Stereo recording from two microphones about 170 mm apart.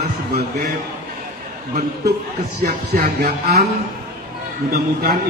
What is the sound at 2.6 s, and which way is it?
Speech, 65° right (ahead or behind).